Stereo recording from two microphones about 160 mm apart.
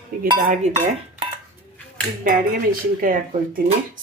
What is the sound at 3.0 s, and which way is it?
Speech, 60° right (ahead or behind).